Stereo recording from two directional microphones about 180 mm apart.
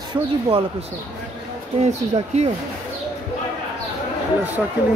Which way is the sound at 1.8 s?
35° right (ahead or behind).